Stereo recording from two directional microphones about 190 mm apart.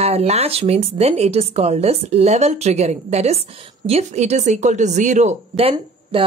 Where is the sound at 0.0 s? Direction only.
35° right (ahead or behind).